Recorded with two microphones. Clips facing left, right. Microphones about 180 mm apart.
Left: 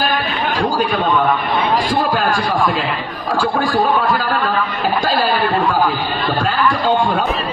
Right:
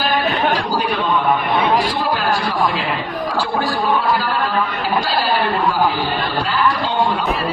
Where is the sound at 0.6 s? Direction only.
50° left (ahead or behind).